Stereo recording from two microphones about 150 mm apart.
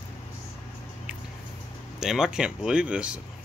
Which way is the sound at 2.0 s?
5° right (ahead or behind).